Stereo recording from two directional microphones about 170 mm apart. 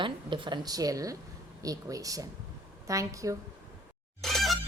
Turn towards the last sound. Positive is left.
turn(degrees=0)  # may be behind; listen again after turning